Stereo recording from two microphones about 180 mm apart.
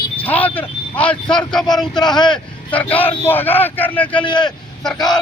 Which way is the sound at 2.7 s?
10° left (ahead or behind).